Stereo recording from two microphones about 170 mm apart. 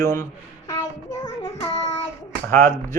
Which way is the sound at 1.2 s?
20° left (ahead or behind).